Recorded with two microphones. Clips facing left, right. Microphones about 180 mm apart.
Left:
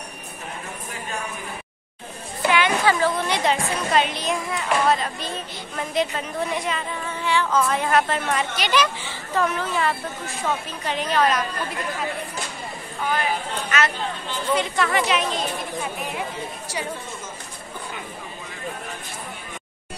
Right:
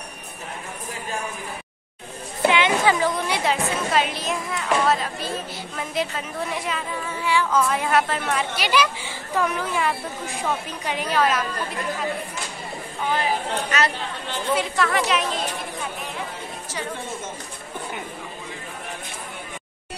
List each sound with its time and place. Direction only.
2.4 s a sound: 20° right (ahead or behind); by 5.3 s 5° right (ahead or behind)
5.8 s a woman's voice: 5° right (ahead or behind)
13.1 s chatter: 30° right (ahead or behind)
14.5 s a woman's voice: centre (ahead or behind)